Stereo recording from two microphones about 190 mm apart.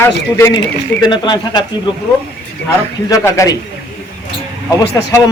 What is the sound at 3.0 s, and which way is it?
Speech, 15° left (ahead or behind).